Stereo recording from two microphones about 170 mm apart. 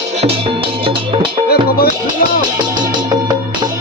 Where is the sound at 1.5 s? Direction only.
65° left (ahead or behind).